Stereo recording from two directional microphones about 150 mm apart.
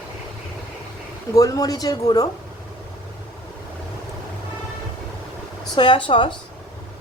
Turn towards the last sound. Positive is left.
turn(degrees=35)  # may be behind; listen again after turning